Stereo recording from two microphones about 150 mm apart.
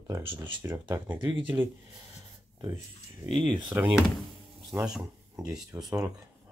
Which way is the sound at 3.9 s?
Centre (ahead or behind).